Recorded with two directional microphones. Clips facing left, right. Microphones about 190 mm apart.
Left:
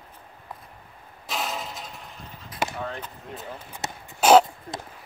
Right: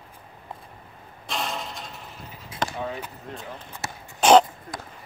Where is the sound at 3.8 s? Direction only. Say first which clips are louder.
Left 1 dB; 20° left (ahead or behind).